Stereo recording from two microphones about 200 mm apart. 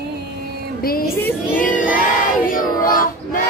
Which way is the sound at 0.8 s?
50° left (ahead or behind).